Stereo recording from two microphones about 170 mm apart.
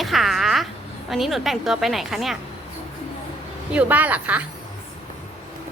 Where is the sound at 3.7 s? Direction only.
10° right (ahead or behind).